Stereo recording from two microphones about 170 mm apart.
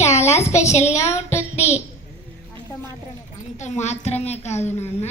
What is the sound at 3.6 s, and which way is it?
A child's voice, 40° left (ahead or behind).